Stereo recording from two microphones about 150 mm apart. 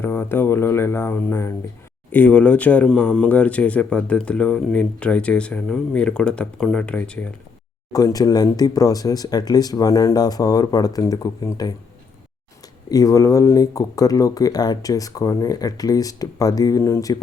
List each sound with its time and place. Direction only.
0.0 s speech: 15° left (ahead or behind)
7.9 s speech: 25° left (ahead or behind)
12.9 s speech: 25° left (ahead or behind)